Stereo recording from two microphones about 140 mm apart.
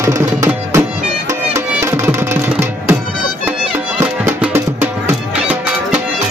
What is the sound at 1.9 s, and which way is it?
Music, 20° right (ahead or behind).